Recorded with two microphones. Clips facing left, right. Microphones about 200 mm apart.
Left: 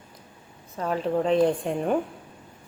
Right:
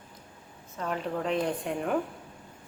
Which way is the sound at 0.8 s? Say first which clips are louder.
Left 6 dB; 35° left (ahead or behind).